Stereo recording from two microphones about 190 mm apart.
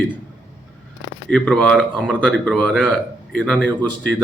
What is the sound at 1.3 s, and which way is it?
Speech, 5° left (ahead or behind).